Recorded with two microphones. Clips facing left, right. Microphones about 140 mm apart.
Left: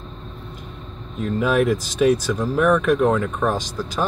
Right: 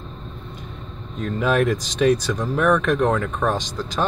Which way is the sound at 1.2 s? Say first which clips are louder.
Left 1 dB; 5° left (ahead or behind).